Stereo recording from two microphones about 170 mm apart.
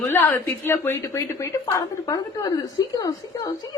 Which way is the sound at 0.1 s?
15° left (ahead or behind).